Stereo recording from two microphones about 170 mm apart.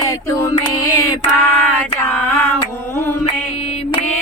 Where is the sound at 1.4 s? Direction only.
10° left (ahead or behind).